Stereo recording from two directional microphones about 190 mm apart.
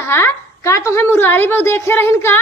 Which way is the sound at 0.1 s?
15° left (ahead or behind).